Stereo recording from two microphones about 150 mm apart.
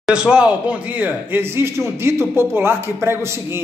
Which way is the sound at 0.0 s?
5° right (ahead or behind).